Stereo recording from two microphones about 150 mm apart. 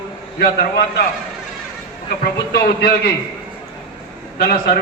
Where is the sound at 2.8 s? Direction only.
90° left.